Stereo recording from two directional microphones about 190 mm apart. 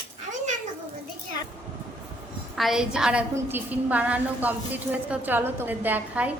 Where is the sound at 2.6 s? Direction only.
Centre (ahead or behind).